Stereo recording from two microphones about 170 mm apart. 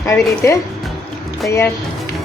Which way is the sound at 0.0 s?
15° left (ahead or behind).